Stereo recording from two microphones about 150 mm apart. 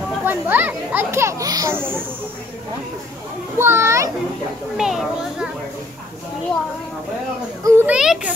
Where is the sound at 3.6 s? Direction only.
15° right (ahead or behind).